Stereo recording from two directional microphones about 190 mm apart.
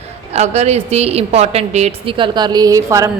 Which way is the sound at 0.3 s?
35° right (ahead or behind).